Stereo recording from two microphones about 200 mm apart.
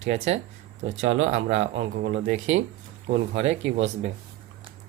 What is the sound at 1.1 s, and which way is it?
Speech, 70° right (ahead or behind).